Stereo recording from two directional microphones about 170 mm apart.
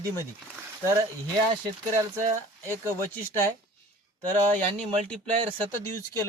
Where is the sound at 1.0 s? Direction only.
30° right (ahead or behind).